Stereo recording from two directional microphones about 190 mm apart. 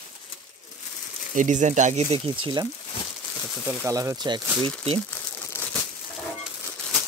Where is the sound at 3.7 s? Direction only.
15° right (ahead or behind).